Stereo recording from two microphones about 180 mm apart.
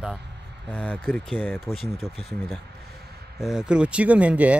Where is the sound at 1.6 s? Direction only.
Centre (ahead or behind).